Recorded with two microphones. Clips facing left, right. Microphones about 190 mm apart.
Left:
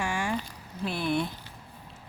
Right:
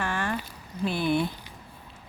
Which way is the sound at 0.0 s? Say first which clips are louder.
Right 1 dB; 10° left (ahead or behind).